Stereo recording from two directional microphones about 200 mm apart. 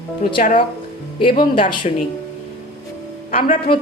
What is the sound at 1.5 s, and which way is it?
Speech, 25° left (ahead or behind).